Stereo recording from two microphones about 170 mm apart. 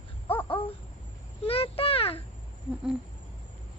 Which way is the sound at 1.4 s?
35° left (ahead or behind).